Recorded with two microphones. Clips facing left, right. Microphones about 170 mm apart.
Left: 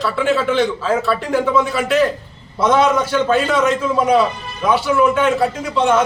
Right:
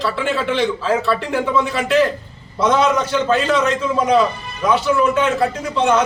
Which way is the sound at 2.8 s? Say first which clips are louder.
Left 3 dB; 10° left (ahead or behind).